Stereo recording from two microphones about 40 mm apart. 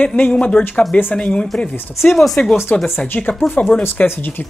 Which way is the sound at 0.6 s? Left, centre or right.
Left.